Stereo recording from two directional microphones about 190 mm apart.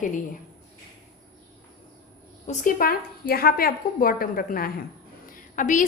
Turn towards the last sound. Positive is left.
turn(degrees=45)  # may be behind; listen again after turning